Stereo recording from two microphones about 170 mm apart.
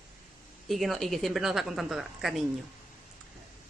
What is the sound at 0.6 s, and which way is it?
A woman's voice, centre (ahead or behind).